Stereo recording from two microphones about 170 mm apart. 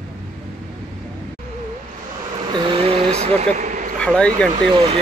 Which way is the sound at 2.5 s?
30° right (ahead or behind).